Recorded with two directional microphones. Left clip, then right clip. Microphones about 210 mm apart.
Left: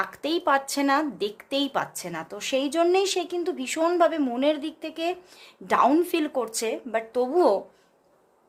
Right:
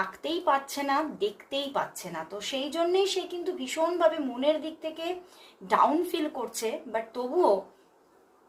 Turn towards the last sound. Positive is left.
turn(degrees=55)  # may be behind; listen again after turning